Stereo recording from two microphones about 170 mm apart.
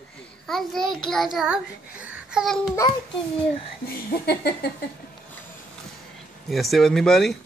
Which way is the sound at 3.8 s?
65° left (ahead or behind).